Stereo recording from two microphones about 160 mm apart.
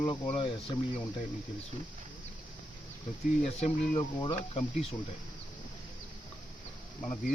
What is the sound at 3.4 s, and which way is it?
Speech, 45° left (ahead or behind).